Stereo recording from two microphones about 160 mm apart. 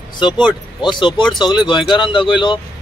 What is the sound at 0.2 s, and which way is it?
Speech, 30° left (ahead or behind).